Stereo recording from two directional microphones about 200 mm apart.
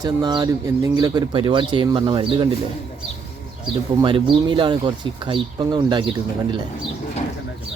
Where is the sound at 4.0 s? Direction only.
25° right (ahead or behind).